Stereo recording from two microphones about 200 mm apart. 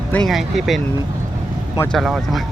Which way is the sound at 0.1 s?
Centre (ahead or behind).